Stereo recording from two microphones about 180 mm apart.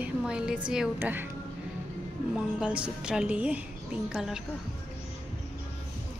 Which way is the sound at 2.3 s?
5° right (ahead or behind).